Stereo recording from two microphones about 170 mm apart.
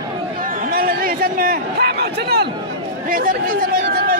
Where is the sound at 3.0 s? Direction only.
55° right (ahead or behind).